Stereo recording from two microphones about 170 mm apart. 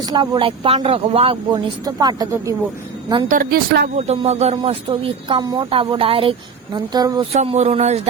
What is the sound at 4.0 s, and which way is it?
Speech, 40° right (ahead or behind).